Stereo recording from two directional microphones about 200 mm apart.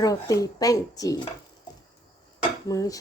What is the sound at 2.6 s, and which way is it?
Speech, 15° left (ahead or behind).